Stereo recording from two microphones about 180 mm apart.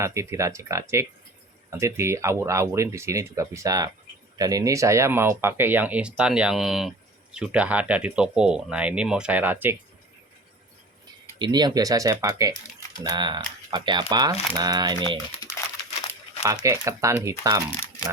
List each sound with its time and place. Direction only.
0.0 s speech: 15° right (ahead or behind)
11.3 s speech: 25° right (ahead or behind)
15.4 s crumpling: 20° left (ahead or behind)
16.4 s speech: 15° right (ahead or behind)